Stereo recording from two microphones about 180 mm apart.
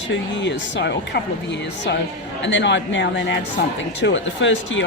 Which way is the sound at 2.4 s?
85° left.